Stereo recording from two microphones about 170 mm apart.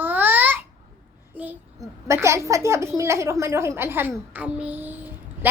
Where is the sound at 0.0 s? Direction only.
10° right (ahead or behind).